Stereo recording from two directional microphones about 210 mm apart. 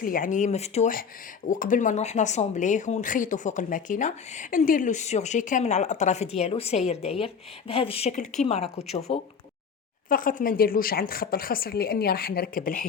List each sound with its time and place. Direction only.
0.0 s speech: 40° left (ahead or behind)
10.1 s a woman's voice: 40° left (ahead or behind)